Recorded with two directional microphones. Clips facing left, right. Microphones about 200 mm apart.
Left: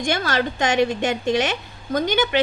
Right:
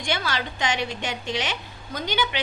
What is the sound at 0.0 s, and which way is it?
A woman's voice, 50° left (ahead or behind).